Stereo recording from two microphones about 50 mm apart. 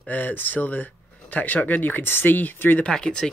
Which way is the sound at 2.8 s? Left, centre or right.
Centre.